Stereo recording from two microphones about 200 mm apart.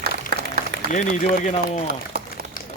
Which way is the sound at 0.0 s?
55° right (ahead or behind).